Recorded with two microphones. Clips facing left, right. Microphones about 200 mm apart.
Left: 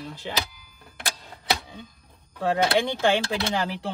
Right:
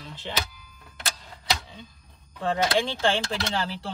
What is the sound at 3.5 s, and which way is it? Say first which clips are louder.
Speech: left 3 dB; 15° left (ahead or behind).